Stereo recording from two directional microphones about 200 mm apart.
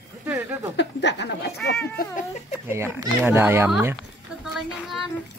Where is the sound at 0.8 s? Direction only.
60° left (ahead or behind).